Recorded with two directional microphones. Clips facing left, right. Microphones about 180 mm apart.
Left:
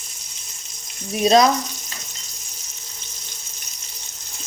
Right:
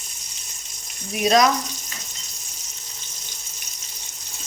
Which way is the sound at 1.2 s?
30° left (ahead or behind).